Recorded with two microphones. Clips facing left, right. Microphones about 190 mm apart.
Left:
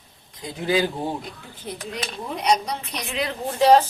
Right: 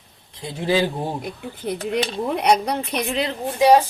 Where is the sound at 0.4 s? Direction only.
30° right (ahead or behind).